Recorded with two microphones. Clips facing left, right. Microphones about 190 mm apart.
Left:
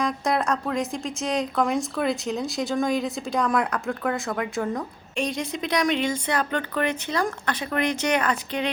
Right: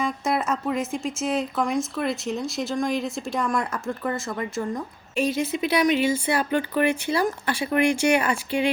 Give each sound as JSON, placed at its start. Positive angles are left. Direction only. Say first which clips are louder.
{"t": 0.0, "sound": "a woman's voice", "louder": "left 1 dB", "side_deg": -5}